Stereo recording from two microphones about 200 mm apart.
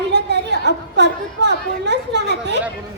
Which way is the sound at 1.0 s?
60° right (ahead or behind).